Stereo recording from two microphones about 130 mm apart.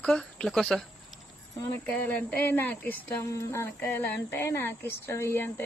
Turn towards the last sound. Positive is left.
turn(degrees=15)  # may be behind; listen again after turning